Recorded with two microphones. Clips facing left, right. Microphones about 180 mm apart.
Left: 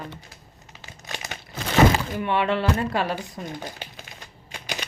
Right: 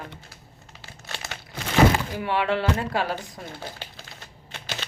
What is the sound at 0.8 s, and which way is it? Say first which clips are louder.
Crumpling: left 2 dB; 15° left (ahead or behind).